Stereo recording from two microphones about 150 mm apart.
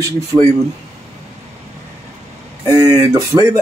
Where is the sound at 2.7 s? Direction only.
20° right (ahead or behind).